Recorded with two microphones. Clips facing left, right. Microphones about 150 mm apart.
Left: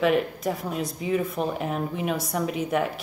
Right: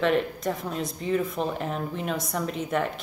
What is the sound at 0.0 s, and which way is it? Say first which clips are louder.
Speech: left 1 dB; 5° left (ahead or behind).